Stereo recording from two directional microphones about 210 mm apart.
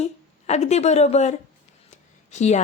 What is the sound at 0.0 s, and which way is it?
A woman's voice, 30° left (ahead or behind).